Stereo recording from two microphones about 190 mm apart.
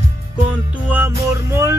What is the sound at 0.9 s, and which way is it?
Music, 10° right (ahead or behind).